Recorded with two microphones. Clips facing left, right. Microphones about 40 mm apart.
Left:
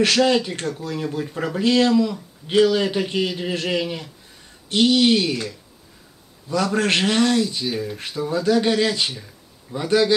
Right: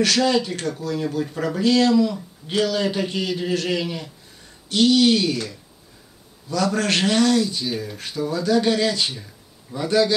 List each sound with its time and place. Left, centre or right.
0.0 s speech: left
4.6 s speech: left
6.5 s speech: left
8.1 s speech: left
9.1 s a sound: centre
9.8 s speech: left